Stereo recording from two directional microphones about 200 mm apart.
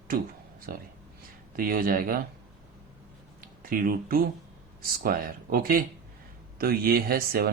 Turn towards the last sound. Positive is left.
turn(degrees=-50)  # may be behind; listen again after turning